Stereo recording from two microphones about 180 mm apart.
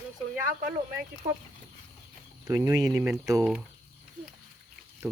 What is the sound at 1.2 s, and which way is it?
Speech, 40° right (ahead or behind).